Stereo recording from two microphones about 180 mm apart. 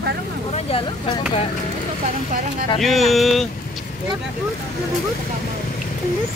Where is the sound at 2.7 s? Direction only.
Centre (ahead or behind).